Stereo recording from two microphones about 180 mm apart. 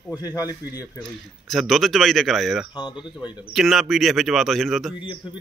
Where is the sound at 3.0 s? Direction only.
25° left (ahead or behind).